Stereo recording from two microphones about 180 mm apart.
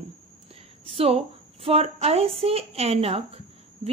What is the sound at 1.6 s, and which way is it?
Speech, 35° right (ahead or behind).